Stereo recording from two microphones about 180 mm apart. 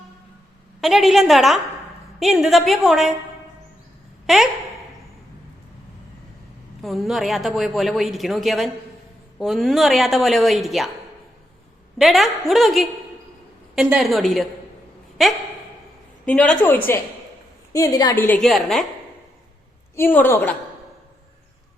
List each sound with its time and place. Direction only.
0.8 s a woman's voice: centre (ahead or behind)
6.8 s a woman's voice: centre (ahead or behind)
11.9 s a woman's voice: centre (ahead or behind)
18.4 s a woman's voice: centre (ahead or behind)
20.0 s a woman's voice: 10° left (ahead or behind)